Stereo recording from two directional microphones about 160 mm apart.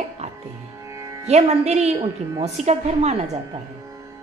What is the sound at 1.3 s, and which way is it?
A woman's voice, 45° right (ahead or behind).